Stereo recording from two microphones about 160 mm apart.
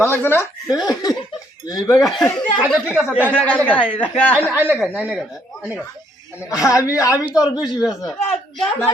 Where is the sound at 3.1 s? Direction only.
10° left (ahead or behind).